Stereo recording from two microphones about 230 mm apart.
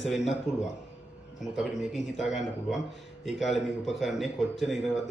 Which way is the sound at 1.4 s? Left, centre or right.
Centre.